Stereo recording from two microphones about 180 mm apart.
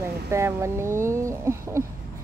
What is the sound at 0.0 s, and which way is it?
Speech, 15° right (ahead or behind).